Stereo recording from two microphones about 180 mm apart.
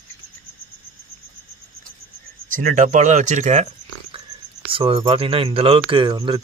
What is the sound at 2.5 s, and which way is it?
Speech, 45° right (ahead or behind).